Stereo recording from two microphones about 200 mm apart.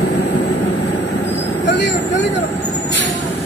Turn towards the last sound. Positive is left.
turn(degrees=60)  # may be behind; listen again after turning